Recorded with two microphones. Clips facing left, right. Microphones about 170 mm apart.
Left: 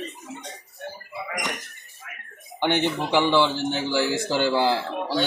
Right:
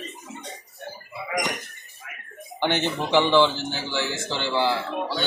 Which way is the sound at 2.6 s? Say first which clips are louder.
Left 1 dB; 10° left (ahead or behind).